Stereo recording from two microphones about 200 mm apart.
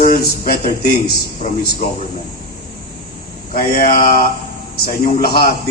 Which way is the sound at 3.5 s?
45° left (ahead or behind).